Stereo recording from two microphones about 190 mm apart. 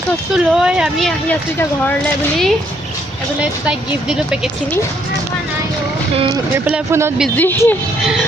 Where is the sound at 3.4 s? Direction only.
5° right (ahead or behind).